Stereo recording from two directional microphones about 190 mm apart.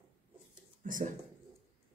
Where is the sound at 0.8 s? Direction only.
45° right (ahead or behind).